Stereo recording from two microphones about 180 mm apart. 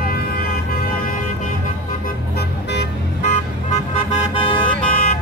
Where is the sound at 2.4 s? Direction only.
70° left (ahead or behind).